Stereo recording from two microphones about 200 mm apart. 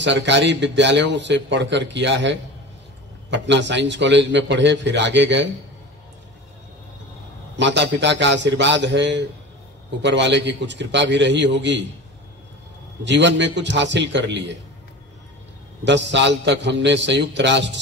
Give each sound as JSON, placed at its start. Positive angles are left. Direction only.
{"t": 0.0, "sound": "speech", "side_deg": -60}
{"t": 7.5, "sound": "speech", "side_deg": -60}
{"t": 13.0, "sound": "speech", "side_deg": -60}
{"t": 15.8, "sound": "speech", "side_deg": -60}